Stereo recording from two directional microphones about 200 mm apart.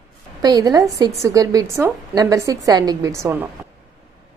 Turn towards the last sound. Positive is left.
turn(degrees=-10)  # may be behind; listen again after turning